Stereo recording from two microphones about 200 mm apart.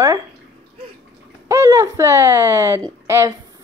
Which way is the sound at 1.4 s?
15° right (ahead or behind).